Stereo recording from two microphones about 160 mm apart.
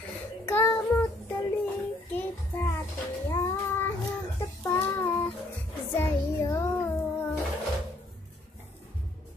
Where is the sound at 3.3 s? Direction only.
15° left (ahead or behind).